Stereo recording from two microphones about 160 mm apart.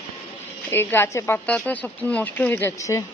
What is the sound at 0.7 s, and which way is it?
Speech, 15° left (ahead or behind).